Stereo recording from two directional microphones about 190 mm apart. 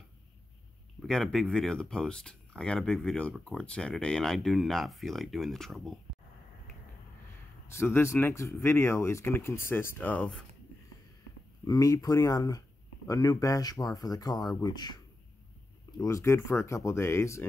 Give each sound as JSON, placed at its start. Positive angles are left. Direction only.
{"t": 1.0, "sound": "speech", "side_deg": 0}
{"t": 7.7, "sound": "speech", "side_deg": 15}
{"t": 11.6, "sound": "speech", "side_deg": 20}
{"t": 16.0, "sound": "speech", "side_deg": 15}